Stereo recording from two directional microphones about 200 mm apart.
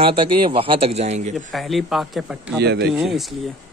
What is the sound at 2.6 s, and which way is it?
Speech, 55° right (ahead or behind).